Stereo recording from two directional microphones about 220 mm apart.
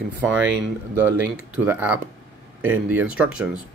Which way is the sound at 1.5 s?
10° right (ahead or behind).